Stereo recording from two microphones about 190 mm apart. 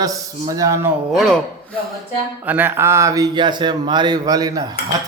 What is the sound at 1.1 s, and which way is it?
Speech, centre (ahead or behind).